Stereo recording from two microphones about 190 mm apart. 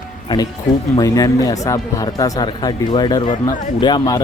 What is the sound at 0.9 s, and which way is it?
Speech, 20° left (ahead or behind).